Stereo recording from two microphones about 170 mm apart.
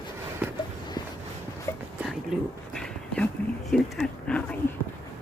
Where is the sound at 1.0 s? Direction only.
25° left (ahead or behind).